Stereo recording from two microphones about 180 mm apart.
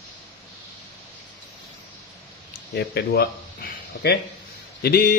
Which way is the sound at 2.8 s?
60° left (ahead or behind).